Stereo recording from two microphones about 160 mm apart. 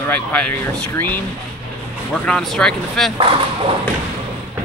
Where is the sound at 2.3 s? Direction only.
5° left (ahead or behind).